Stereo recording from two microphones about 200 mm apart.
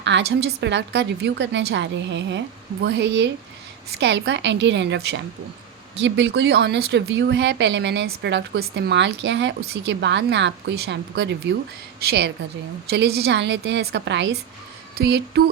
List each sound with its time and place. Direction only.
0.0 s a woman's voice: 60° right (ahead or behind)